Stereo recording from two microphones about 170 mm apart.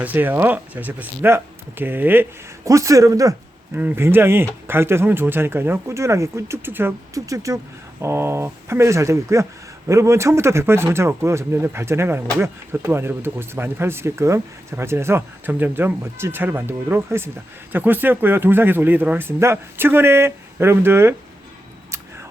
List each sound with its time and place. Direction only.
0.0 s a man's voice: 10° right (ahead or behind)